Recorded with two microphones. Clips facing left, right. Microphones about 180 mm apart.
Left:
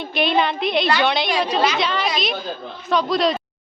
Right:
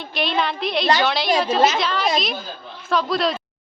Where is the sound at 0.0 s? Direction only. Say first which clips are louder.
Left 3 dB; centre (ahead or behind).